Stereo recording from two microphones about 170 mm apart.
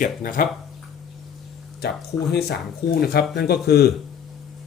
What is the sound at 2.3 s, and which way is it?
Speech, 65° left (ahead or behind).